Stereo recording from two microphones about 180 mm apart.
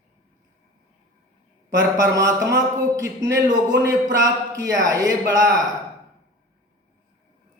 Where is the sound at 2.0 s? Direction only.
20° right (ahead or behind).